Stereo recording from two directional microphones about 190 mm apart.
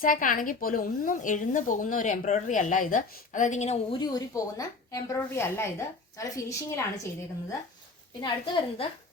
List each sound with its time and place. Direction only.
0.0 s a woman's voice: 45° left (ahead or behind)
3.9 s a woman's voice: 20° left (ahead or behind)
8.2 s a woman's voice: 25° left (ahead or behind)